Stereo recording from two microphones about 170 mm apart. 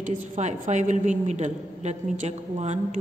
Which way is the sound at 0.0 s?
45° right (ahead or behind).